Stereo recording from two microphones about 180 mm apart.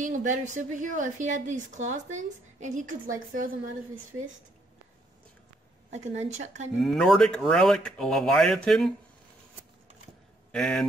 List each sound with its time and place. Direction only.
0.0 s a woman's voice: 45° right (ahead or behind)
5.9 s speech: 40° right (ahead or behind)
6.8 s speech: centre (ahead or behind)
10.5 s speech: 5° left (ahead or behind)